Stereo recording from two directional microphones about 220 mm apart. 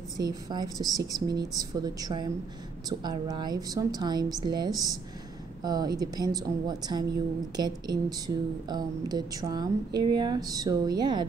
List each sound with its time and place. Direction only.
0.2 s a woman's voice: 20° right (ahead or behind)